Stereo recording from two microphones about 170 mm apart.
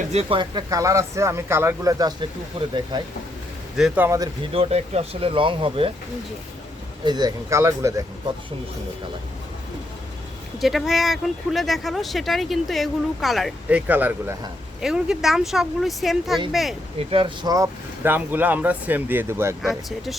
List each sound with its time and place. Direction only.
0.0 s speech: 40° right (ahead or behind)
3.8 s speech: 5° right (ahead or behind)
4.5 s speech: 35° right (ahead or behind)
7.0 s speech: 25° right (ahead or behind)
10.6 s speech: centre (ahead or behind)
17.0 s speech: 35° right (ahead or behind); by 19.7 s 15° right (ahead or behind)